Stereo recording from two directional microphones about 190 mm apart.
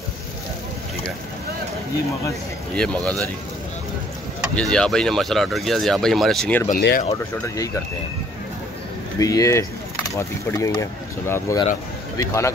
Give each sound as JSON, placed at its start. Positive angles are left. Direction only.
{"t": 2.7, "sound": "speech", "side_deg": 5}
{"t": 4.6, "sound": "speech", "side_deg": 5}
{"t": 6.7, "sound": "speech", "side_deg": 50}
{"t": 7.1, "sound": "speech", "side_deg": 15}
{"t": 9.2, "sound": "speech", "side_deg": 15}